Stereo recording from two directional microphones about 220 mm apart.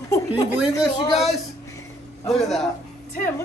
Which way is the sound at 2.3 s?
Centre (ahead or behind).